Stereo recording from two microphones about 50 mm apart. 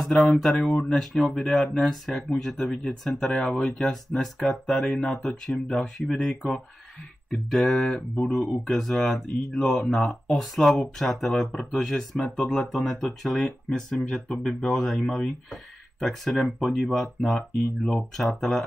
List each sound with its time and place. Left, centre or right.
0.0 s speech: centre
0.7 s speech: centre
3.8 s speech: centre
7.2 s speech: centre
8.3 s speech: centre
17.4 s speech: centre